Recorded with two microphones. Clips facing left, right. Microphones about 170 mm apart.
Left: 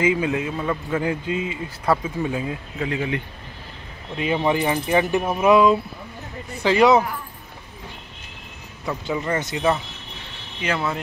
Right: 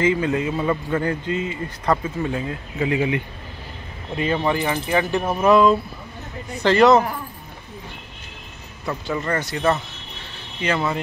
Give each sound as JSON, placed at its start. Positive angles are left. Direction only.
{"t": 0.0, "sound": "speech", "side_deg": 10}
{"t": 0.9, "sound": "speech", "side_deg": 10}
{"t": 2.8, "sound": "speech", "side_deg": -10}
{"t": 4.2, "sound": "speech", "side_deg": 10}
{"t": 8.8, "sound": "speech", "side_deg": 10}
{"t": 10.6, "sound": "speech", "side_deg": 0}